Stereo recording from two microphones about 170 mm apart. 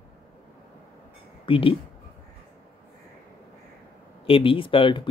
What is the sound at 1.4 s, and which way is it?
Speech, 30° left (ahead or behind).